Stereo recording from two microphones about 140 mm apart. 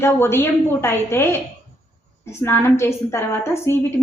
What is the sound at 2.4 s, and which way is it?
A woman's voice, 20° left (ahead or behind).